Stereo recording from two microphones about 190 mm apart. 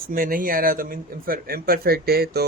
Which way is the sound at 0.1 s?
50° right (ahead or behind).